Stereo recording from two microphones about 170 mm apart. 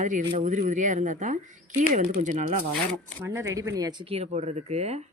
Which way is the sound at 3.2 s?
20° right (ahead or behind).